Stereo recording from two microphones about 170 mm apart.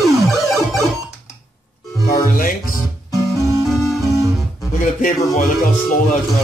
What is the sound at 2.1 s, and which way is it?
Music, 55° left (ahead or behind).